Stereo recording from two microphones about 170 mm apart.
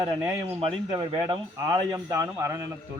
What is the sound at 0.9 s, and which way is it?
A man's voice, 20° right (ahead or behind).